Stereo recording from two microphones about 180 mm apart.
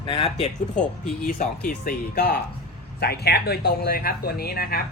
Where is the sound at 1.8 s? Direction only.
60° left (ahead or behind).